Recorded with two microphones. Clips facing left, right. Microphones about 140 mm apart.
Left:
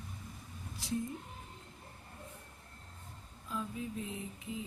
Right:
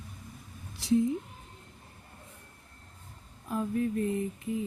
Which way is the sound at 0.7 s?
75° right (ahead or behind).